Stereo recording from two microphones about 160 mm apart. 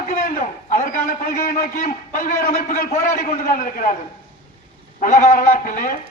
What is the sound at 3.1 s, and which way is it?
Speech, 60° left (ahead or behind).